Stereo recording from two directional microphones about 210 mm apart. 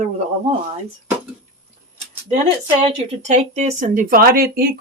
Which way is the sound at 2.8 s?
35° right (ahead or behind).